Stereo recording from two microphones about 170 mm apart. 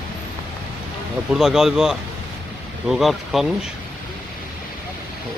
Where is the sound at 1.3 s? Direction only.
Centre (ahead or behind).